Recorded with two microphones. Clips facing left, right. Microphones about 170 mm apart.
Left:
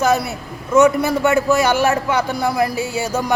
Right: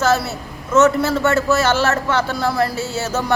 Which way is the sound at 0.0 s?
15° left (ahead or behind).